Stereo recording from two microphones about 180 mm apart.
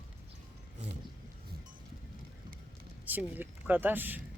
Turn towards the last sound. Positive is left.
turn(degrees=-10)  # may be behind; listen again after turning